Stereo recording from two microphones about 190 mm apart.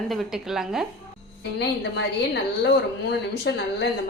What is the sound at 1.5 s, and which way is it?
A woman's voice, 70° left (ahead or behind).